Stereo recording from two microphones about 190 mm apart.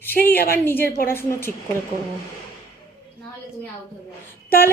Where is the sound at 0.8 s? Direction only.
55° left (ahead or behind).